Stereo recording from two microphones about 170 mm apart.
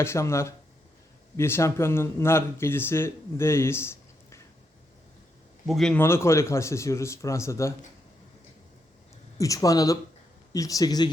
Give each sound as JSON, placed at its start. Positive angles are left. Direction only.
{"t": 0.0, "sound": "speech", "side_deg": 15}
{"t": 5.6, "sound": "speech", "side_deg": 0}
{"t": 9.4, "sound": "speech", "side_deg": 20}